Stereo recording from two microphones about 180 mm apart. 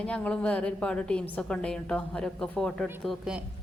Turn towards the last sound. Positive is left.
turn(degrees=0)  # may be behind; listen again after turning